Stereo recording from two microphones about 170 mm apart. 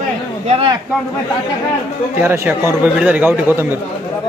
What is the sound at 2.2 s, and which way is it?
A man's voice, 10° right (ahead or behind).